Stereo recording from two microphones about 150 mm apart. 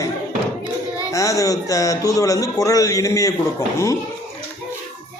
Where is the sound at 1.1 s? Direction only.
20° left (ahead or behind).